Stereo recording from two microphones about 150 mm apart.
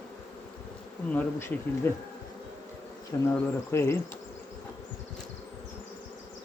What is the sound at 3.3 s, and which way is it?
Speech, 15° left (ahead or behind).